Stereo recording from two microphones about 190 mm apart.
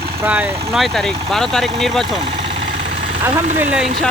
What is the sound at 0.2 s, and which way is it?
Speech, 10° right (ahead or behind).